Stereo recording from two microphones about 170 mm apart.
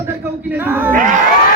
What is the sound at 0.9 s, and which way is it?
Speech, 50° right (ahead or behind).